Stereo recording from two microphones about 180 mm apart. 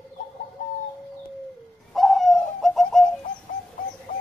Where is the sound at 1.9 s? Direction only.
Centre (ahead or behind).